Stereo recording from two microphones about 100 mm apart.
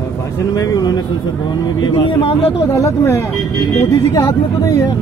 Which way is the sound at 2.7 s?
30° left (ahead or behind).